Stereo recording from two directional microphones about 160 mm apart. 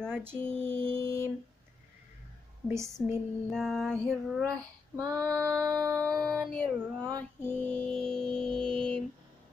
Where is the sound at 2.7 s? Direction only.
20° right (ahead or behind).